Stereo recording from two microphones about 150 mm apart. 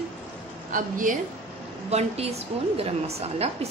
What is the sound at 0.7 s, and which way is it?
Speech, 65° right (ahead or behind).